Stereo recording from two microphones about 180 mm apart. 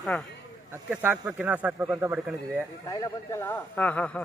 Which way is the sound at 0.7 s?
10° right (ahead or behind).